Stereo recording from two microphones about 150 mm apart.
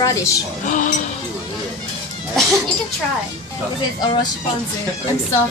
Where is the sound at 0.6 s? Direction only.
60° left (ahead or behind).